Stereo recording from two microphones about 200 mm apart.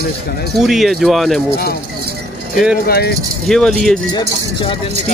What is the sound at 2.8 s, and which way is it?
Speech, 50° left (ahead or behind).